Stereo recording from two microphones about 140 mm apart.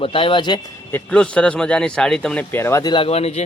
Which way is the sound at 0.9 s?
10° left (ahead or behind).